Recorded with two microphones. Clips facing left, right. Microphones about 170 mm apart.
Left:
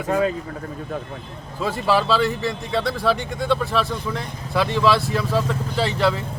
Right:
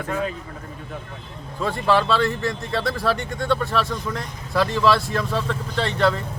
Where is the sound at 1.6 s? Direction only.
5° left (ahead or behind).